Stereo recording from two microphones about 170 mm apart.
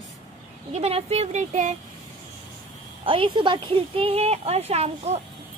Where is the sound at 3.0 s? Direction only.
30° right (ahead or behind).